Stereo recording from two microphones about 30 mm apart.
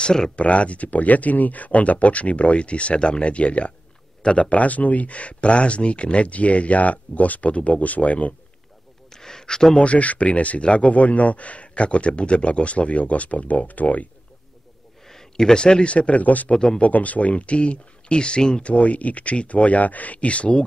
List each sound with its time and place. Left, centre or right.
0.0 s speech: left
0.4 s speech: left
9.1 s a sound: centre
9.8 s speech: left
15.0 s a sound: centre
15.5 s speech: left
16.4 s speech: left
16.8 s speech: left
18.6 s speech: left